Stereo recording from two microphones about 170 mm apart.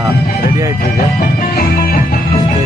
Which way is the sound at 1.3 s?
55° left (ahead or behind).